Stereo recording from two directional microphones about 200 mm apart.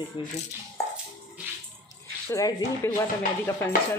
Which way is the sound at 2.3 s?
15° left (ahead or behind).